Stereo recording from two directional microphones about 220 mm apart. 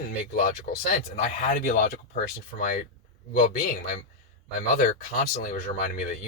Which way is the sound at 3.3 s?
40° left (ahead or behind).